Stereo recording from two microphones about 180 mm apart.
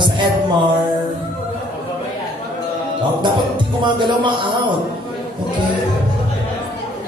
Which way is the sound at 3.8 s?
25° right (ahead or behind).